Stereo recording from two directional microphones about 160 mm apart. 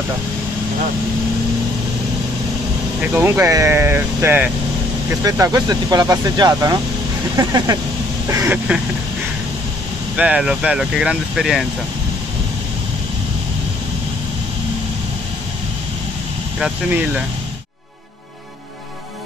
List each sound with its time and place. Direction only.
3.0 s speech: 10° right (ahead or behind)
10.1 s speech: 5° right (ahead or behind)
16.5 s speech: 5° right (ahead or behind)